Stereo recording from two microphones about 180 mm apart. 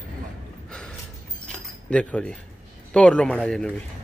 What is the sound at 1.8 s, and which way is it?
A man's voice, 5° left (ahead or behind).